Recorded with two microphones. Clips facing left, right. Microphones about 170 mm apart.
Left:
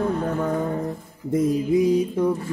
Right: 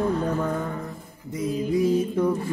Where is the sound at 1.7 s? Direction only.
20° left (ahead or behind).